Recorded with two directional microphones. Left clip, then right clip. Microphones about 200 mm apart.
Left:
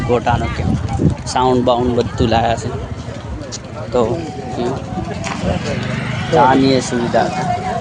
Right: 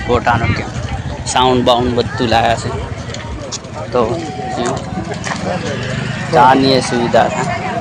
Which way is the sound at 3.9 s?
20° left (ahead or behind).